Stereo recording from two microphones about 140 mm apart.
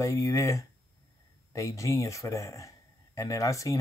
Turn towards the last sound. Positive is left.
turn(degrees=25)  # may be behind; listen again after turning